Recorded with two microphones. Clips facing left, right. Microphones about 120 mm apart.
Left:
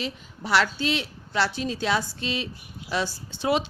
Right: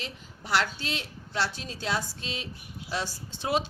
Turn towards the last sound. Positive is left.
turn(degrees=90)